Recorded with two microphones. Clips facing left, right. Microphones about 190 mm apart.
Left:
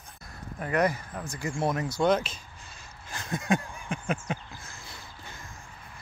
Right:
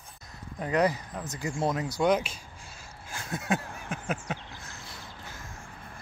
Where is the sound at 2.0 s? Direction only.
10° right (ahead or behind).